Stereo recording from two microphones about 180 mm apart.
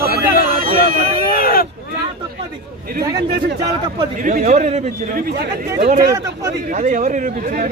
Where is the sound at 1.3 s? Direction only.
55° left (ahead or behind).